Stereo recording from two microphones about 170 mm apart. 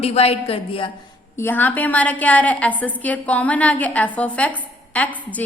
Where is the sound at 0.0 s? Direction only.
35° left (ahead or behind).